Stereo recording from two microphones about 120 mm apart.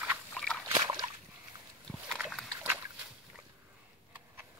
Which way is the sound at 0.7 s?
40° right (ahead or behind).